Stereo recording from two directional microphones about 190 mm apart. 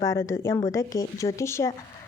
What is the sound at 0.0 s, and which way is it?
A woman's voice, 15° left (ahead or behind).